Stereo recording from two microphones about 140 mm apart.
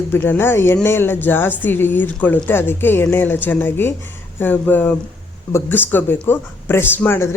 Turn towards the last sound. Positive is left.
turn(degrees=20)  # may be behind; listen again after turning